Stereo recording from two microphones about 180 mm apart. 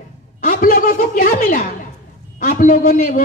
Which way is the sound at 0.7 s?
50° left (ahead or behind).